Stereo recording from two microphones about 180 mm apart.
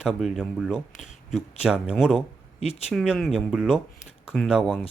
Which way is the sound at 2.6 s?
35° left (ahead or behind).